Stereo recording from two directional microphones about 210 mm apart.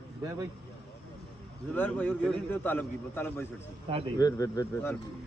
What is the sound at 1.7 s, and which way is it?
Speech, 10° left (ahead or behind).